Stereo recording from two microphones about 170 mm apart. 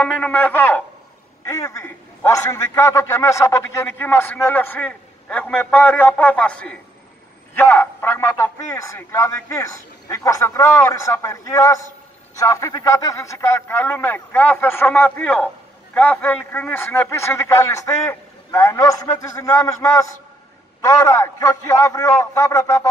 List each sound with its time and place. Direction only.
0.0 s a man's voice: 10° left (ahead or behind)